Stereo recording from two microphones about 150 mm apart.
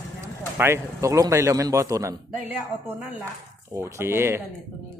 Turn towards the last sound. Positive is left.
turn(degrees=-15)  # may be behind; listen again after turning